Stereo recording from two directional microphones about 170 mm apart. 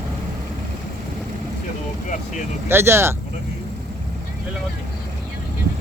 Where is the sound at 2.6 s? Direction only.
15° right (ahead or behind).